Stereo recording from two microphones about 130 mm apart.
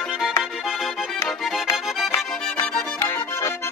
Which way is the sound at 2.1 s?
25° left (ahead or behind).